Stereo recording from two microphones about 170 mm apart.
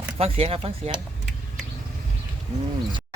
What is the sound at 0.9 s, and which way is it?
Vehicle, centre (ahead or behind).